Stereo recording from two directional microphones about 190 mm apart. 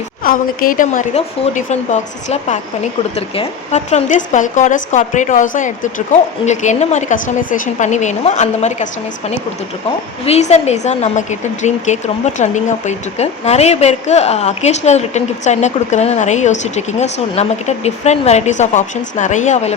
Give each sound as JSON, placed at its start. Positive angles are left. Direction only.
{"t": 0.2, "sound": "a woman's voice", "side_deg": 50}